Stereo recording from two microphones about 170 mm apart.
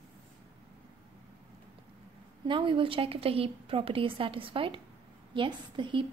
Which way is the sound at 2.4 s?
30° right (ahead or behind).